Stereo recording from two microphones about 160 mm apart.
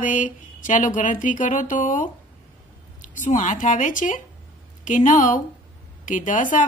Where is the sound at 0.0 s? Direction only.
55° left (ahead or behind).